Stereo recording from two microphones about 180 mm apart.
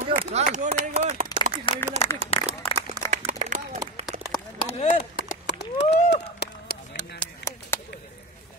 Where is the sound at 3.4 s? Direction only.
40° right (ahead or behind).